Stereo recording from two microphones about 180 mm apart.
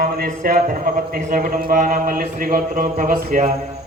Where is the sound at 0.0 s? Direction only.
50° right (ahead or behind).